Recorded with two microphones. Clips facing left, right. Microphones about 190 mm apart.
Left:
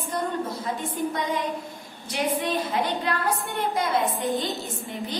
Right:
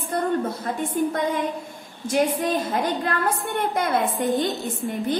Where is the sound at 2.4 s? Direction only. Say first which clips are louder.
Right 2 dB; 45° right (ahead or behind).